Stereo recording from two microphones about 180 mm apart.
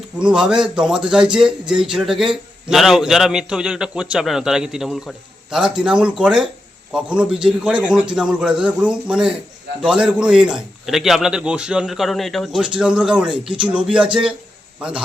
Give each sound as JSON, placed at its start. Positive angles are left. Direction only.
{"t": 0.2, "sound": "a man's voice", "side_deg": -5}